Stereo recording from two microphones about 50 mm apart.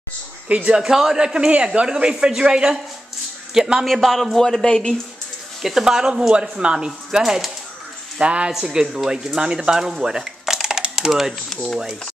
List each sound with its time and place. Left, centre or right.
0.7 s speech: centre
3.8 s a man's voice: centre
5.6 s speech: centre
8.2 s speech: right; by 11.8 s centre